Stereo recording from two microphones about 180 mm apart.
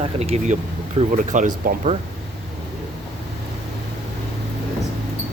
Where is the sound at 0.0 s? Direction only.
35° right (ahead or behind).